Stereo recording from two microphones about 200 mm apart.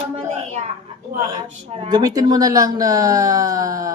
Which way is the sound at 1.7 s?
25° right (ahead or behind).